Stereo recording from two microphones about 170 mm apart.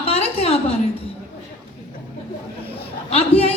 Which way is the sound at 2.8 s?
35° left (ahead or behind).